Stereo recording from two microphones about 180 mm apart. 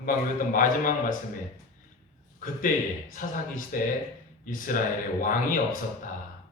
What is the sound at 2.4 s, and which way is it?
A woman's voice, 50° left (ahead or behind).